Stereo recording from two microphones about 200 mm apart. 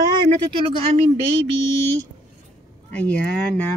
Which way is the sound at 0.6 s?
35° right (ahead or behind).